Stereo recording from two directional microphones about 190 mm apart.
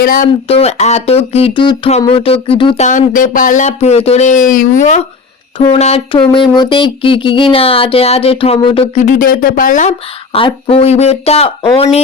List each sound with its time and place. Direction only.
0.0 s speech: 50° left (ahead or behind)
0.4 s speech: 30° left (ahead or behind)
2.8 s speech: 40° left (ahead or behind)
10.3 s speech: 30° left (ahead or behind)